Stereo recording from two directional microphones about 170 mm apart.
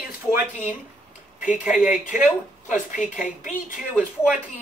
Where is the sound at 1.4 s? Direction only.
5° right (ahead or behind).